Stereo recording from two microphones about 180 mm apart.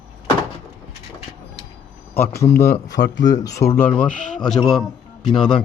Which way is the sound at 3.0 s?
70° left (ahead or behind).